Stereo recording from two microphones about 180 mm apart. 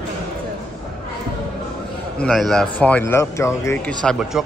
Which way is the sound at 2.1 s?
5° left (ahead or behind).